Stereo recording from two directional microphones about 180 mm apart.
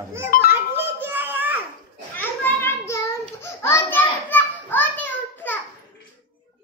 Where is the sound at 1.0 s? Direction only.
10° right (ahead or behind).